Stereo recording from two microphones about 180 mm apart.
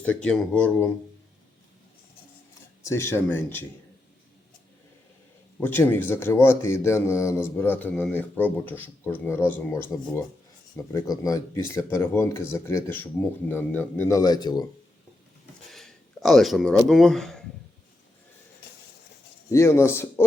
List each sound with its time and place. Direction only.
0.0 s speech: 5° left (ahead or behind)
2.8 s speech: 15° left (ahead or behind)
5.5 s speech: 10° left (ahead or behind)
10.9 s speech: 20° left (ahead or behind)
15.7 s speech: centre (ahead or behind)
19.5 s speech: 15° left (ahead or behind)